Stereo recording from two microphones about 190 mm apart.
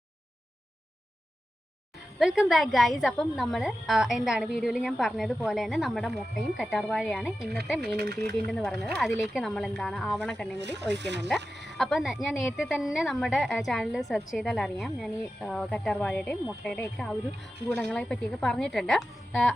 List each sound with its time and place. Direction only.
2.1 s speech: centre (ahead or behind)
7.9 s speech: 60° right (ahead or behind)
8.4 s speech: centre (ahead or behind)
10.6 s speech: 65° right (ahead or behind)
11.3 s a sound: 65° right (ahead or behind)
11.8 s speech: centre (ahead or behind)